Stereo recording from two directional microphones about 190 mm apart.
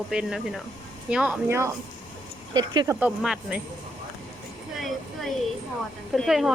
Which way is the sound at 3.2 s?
Centre (ahead or behind).